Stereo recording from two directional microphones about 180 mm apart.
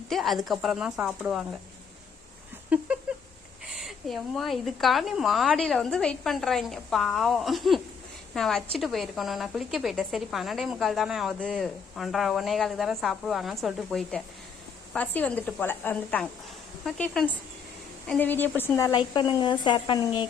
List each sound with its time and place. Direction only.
0.1 s a woman's voice: centre (ahead or behind)
2.7 s a sound: 10° right (ahead or behind)
3.7 s a woman's voice: centre (ahead or behind); by 20.2 s 25° left (ahead or behind)